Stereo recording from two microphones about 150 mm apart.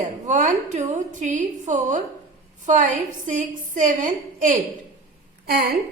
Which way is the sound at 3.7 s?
60° right (ahead or behind).